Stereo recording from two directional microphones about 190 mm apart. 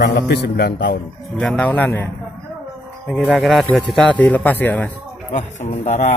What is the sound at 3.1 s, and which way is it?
A man's voice, centre (ahead or behind).